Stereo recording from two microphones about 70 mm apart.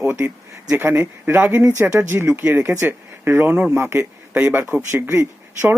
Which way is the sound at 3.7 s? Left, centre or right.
Right.